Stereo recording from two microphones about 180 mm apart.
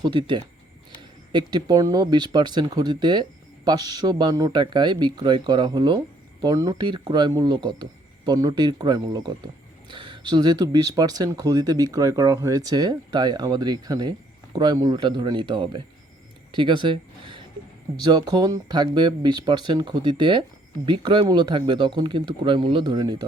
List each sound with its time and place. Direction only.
0.0 s speech: 25° right (ahead or behind)
16.5 s a sound: 25° right (ahead or behind)
17.9 s speech: 25° right (ahead or behind)